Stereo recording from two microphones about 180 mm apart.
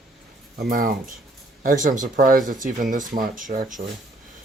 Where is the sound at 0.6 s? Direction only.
50° right (ahead or behind).